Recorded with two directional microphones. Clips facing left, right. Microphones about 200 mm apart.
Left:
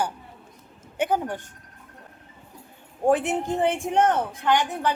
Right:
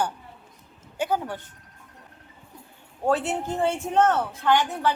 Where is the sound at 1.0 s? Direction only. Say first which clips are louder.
Left 2 dB; 20° left (ahead or behind).